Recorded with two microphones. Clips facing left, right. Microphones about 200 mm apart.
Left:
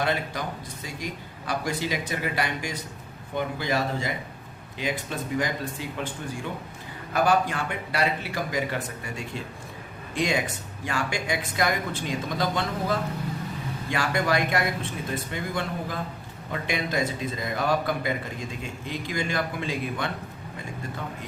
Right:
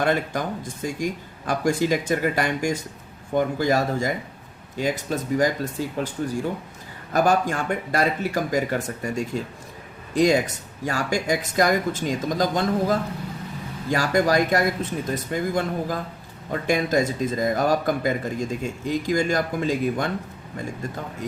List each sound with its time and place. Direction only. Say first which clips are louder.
0.0 s a man's voice: right 5 dB; 50° right (ahead or behind)